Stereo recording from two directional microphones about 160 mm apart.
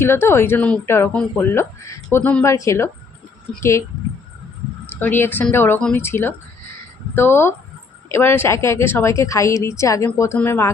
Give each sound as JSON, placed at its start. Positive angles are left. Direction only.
{"t": 0.0, "sound": "a woman's voice", "side_deg": 15}
{"t": 4.9, "sound": "a woman's voice", "side_deg": 10}